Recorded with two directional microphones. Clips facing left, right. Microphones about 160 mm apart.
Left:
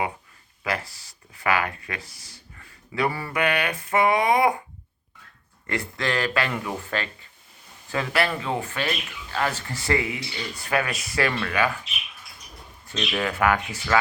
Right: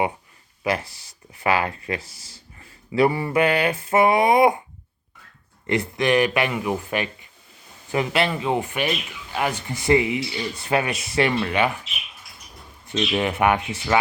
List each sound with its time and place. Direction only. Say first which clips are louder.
0.6 s speech: right 4 dB; 20° right (ahead or behind)
5.6 s speech: right 6 dB; 20° right (ahead or behind)
12.9 s speech: right 4 dB; 20° right (ahead or behind)